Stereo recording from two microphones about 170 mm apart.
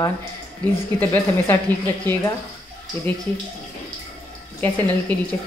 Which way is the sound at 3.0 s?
15° left (ahead or behind).